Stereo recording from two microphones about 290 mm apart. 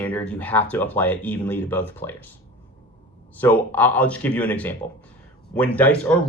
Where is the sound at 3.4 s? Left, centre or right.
Centre.